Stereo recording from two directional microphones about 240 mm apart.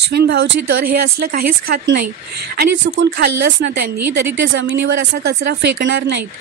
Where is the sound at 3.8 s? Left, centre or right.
Right.